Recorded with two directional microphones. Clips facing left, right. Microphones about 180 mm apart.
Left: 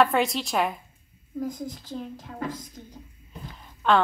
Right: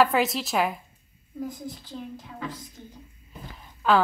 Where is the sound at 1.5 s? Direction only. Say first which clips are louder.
Left 3 dB; 45° left (ahead or behind).